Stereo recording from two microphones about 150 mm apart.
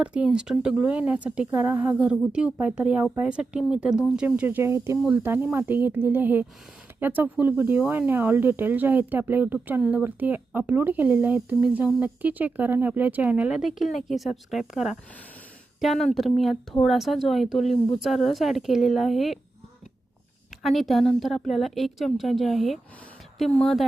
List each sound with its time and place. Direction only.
0.0 s a woman's voice: 10° right (ahead or behind)
20.6 s a woman's voice: centre (ahead or behind)